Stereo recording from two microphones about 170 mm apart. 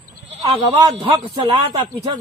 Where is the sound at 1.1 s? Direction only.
20° right (ahead or behind).